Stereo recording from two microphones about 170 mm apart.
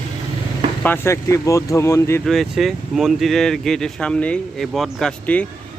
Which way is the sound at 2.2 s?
Centre (ahead or behind).